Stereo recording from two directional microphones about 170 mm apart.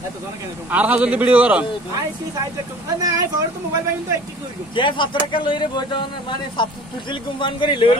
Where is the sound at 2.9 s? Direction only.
20° right (ahead or behind).